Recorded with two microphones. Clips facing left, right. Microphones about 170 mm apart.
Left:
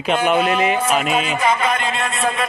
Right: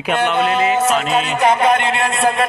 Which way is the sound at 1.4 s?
65° right (ahead or behind).